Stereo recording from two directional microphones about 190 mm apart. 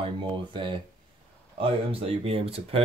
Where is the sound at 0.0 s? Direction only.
25° right (ahead or behind).